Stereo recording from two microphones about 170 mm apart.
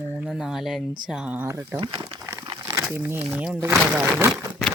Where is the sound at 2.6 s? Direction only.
15° right (ahead or behind).